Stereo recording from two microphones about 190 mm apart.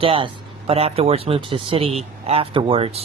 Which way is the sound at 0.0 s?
30° right (ahead or behind).